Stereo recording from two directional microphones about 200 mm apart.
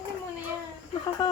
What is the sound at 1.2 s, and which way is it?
Speech, 20° left (ahead or behind).